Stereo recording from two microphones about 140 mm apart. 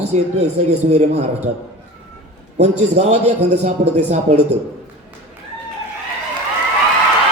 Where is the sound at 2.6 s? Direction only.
50° right (ahead or behind).